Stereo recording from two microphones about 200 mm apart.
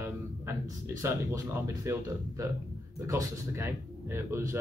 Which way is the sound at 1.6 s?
15° right (ahead or behind).